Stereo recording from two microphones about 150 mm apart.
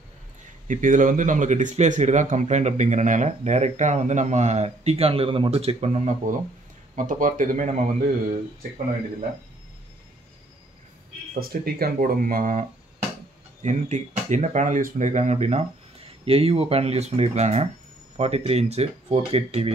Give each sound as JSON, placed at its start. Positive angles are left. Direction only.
{"t": 0.7, "sound": "speech", "side_deg": -60}
{"t": 7.0, "sound": "speech", "side_deg": -60}
{"t": 11.3, "sound": "speech", "side_deg": -85}